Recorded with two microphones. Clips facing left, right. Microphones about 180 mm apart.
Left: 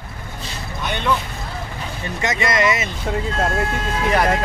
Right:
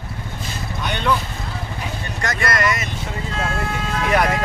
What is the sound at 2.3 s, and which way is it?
Speech, centre (ahead or behind).